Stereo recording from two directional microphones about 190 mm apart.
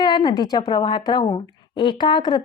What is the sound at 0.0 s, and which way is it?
Speech, 25° left (ahead or behind).